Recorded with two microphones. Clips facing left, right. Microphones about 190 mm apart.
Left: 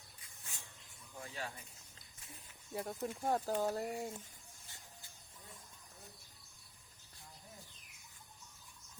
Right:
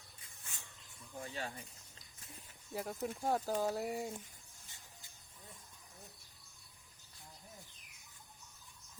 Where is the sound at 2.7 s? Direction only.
Centre (ahead or behind).